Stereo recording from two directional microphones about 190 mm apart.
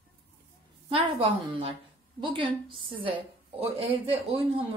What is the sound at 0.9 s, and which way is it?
A woman's voice, 30° right (ahead or behind).